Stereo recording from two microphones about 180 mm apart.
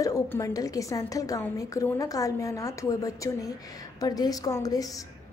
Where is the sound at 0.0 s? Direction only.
20° left (ahead or behind).